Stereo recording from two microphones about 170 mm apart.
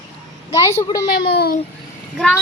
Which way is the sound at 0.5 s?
15° left (ahead or behind).